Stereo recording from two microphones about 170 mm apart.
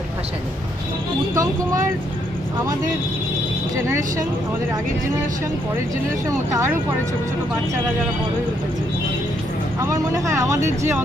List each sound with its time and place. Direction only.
1.3 s speech: 20° right (ahead or behind)
6.2 s speech: 15° right (ahead or behind)
9.8 s speech: 15° right (ahead or behind)